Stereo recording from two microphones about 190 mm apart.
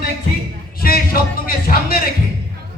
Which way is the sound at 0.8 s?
50° left (ahead or behind).